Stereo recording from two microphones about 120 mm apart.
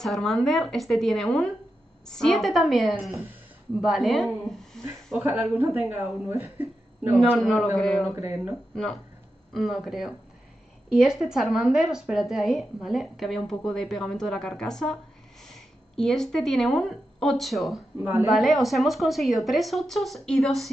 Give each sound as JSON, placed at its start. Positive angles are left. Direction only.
{"t": 0.0, "sound": "speech", "side_deg": 0}
{"t": 5.4, "sound": "speech", "side_deg": -15}
{"t": 7.2, "sound": "speech", "side_deg": 5}
{"t": 8.2, "sound": "speech", "side_deg": -15}
{"t": 9.5, "sound": "speech", "side_deg": 0}
{"t": 17.9, "sound": "speech", "side_deg": -20}
{"t": 18.2, "sound": "speech", "side_deg": 0}